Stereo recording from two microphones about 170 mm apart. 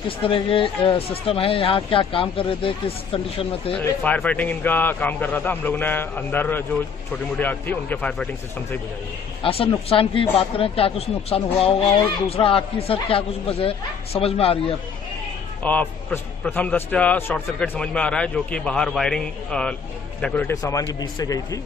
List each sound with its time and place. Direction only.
0.2 s speech: 30° left (ahead or behind)
3.7 s a man's voice: 10° left (ahead or behind)
9.4 s speech: 35° left (ahead or behind)
15.6 s a man's voice: 10° left (ahead or behind)